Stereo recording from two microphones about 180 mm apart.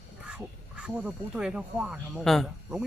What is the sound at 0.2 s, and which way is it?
Speech, 5° right (ahead or behind).